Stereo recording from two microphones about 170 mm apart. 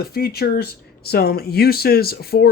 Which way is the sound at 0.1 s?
65° left (ahead or behind).